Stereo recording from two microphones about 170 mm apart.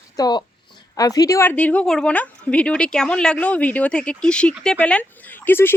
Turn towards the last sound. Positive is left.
turn(degrees=10)  # may be behind; listen again after turning